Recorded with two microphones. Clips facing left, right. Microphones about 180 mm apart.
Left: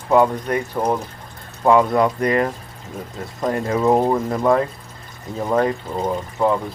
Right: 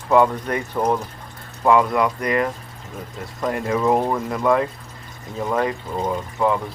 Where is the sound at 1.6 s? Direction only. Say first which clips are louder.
Left 2 dB; 25° left (ahead or behind).